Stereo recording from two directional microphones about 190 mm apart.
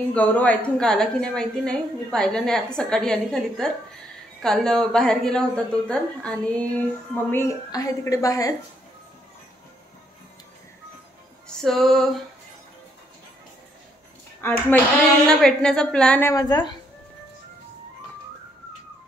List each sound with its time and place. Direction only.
0.1 s a woman's voice: 10° left (ahead or behind)
11.4 s female singing: centre (ahead or behind)
14.4 s a woman's voice: 15° left (ahead or behind)